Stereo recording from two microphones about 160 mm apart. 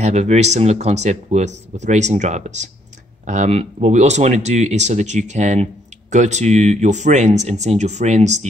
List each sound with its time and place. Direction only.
0.0 s speech: 45° right (ahead or behind)